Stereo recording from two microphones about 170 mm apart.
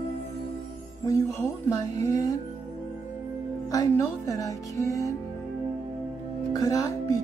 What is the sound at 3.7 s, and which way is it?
Music, 20° left (ahead or behind).